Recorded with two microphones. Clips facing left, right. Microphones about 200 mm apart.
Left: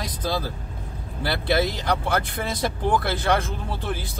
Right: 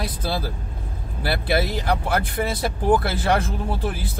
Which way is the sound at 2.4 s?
15° right (ahead or behind).